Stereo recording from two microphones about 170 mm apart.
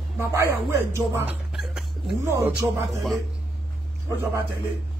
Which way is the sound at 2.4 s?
15° right (ahead or behind).